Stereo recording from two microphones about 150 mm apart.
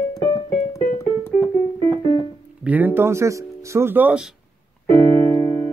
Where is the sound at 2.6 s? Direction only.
10° right (ahead or behind).